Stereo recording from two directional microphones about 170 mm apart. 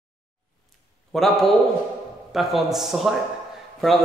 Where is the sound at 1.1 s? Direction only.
Centre (ahead or behind).